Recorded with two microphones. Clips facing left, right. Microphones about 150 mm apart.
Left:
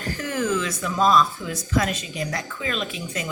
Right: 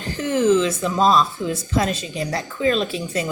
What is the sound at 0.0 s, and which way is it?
Speech, 25° right (ahead or behind).